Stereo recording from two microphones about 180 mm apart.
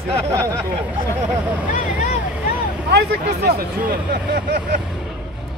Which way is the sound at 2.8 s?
60° right (ahead or behind).